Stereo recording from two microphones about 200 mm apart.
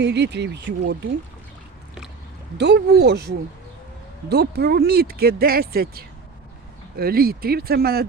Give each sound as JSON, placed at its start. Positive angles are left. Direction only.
{"t": 0.0, "sound": "speech", "side_deg": -60}
{"t": 2.6, "sound": "speech", "side_deg": -55}